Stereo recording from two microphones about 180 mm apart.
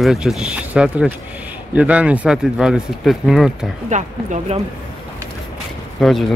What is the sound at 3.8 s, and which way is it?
Speech, 40° right (ahead or behind).